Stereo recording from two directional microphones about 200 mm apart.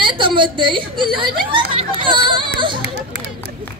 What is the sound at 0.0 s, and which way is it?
Speech, 25° right (ahead or behind).